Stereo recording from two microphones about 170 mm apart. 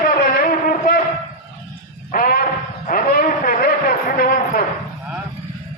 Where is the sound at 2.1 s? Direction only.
60° left (ahead or behind).